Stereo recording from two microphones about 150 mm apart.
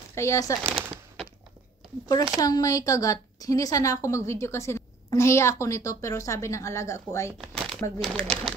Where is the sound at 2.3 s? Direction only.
25° left (ahead or behind).